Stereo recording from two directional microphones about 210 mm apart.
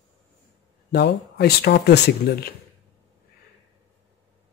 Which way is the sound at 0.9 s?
50° left (ahead or behind).